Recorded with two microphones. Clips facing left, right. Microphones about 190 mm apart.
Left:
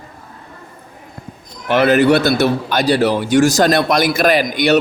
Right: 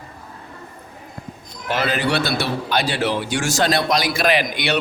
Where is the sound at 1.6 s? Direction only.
60° left (ahead or behind).